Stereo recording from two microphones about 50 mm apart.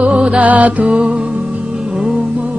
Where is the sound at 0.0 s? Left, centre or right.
Right.